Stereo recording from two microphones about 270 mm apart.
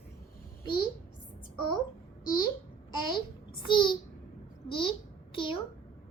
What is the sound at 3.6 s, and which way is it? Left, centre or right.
A child's voice, centre.